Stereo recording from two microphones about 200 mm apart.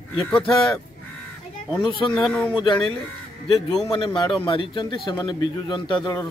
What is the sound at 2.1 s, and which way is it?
Speech, 5° left (ahead or behind).